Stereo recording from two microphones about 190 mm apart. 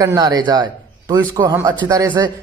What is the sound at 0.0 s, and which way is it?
A man's voice, 20° right (ahead or behind).